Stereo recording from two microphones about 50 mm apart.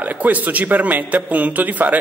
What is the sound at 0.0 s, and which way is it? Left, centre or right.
Speech, right.